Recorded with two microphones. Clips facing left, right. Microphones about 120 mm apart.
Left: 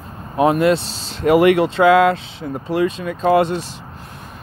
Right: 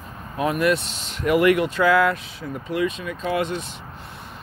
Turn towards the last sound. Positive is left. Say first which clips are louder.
# left 9 dB
turn(degrees=35)  # may be behind; listen again after turning